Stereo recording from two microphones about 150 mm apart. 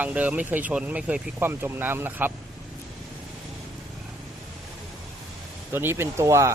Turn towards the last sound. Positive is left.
turn(degrees=-20)  # may be behind; listen again after turning